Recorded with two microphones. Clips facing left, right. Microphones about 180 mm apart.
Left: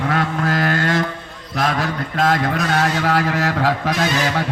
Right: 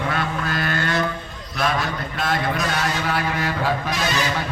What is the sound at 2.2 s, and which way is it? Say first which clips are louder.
A man's voice: left 5 dB; 80° left.